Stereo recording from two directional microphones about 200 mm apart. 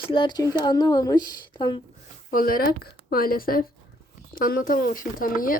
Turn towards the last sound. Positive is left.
turn(degrees=45)  # may be behind; listen again after turning